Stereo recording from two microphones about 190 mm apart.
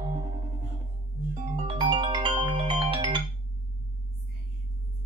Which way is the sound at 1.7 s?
25° right (ahead or behind).